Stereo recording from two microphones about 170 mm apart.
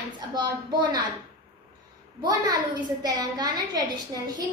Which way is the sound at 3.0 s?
25° right (ahead or behind).